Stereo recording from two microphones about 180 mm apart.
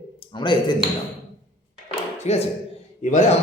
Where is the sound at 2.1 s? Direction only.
40° left (ahead or behind).